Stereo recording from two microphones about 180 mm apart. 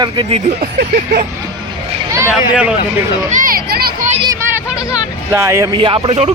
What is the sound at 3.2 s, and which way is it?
Music, 50° right (ahead or behind).